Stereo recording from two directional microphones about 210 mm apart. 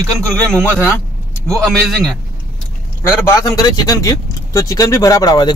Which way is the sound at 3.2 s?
20° left (ahead or behind).